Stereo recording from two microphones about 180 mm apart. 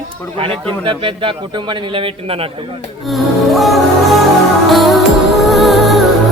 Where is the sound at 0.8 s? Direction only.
30° right (ahead or behind).